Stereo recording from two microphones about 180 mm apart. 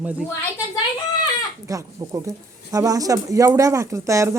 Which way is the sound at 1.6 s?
20° right (ahead or behind).